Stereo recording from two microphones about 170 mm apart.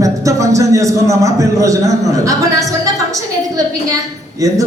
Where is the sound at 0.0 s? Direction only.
20° right (ahead or behind).